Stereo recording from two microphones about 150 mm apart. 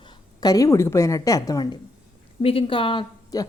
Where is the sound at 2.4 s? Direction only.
40° left (ahead or behind).